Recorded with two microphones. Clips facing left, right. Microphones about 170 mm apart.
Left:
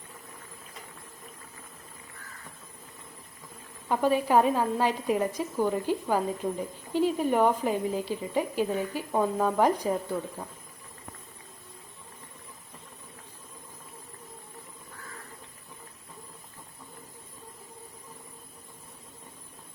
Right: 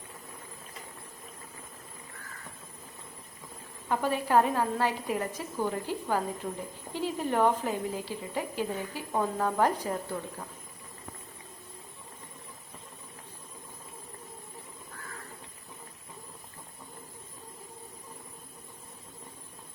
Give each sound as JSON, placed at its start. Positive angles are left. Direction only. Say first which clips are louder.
{"t": 3.8, "sound": "speech", "louder": "left 4 dB", "side_deg": 15}